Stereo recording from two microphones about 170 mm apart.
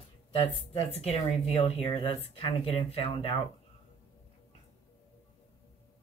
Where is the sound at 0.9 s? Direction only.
35° left (ahead or behind).